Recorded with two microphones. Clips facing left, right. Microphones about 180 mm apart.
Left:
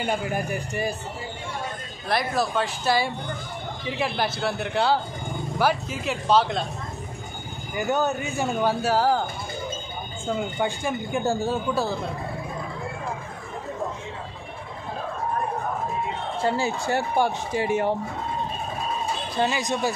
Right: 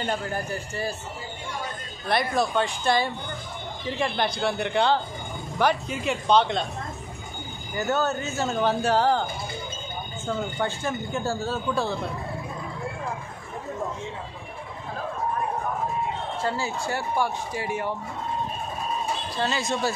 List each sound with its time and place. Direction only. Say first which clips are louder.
0.0 s speech: left 2 dB; 10° left (ahead or behind)
2.0 s a man's voice: right 1 dB; centre (ahead or behind)
7.7 s speech: left 1 dB; 15° left (ahead or behind)
10.2 s speech: left 2 dB; 15° left (ahead or behind)
11.7 s a man's voice: left 1 dB; 5° left (ahead or behind)
16.4 s speech: left 5 dB; 20° left (ahead or behind)
19.3 s speech: left 3 dB; 15° left (ahead or behind)